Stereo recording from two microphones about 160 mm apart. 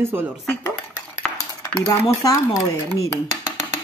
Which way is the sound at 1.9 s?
20° left (ahead or behind).